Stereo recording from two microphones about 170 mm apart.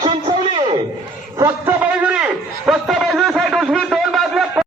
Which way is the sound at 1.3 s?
15° right (ahead or behind).